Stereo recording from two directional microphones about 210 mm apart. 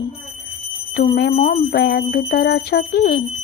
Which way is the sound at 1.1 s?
50° left (ahead or behind).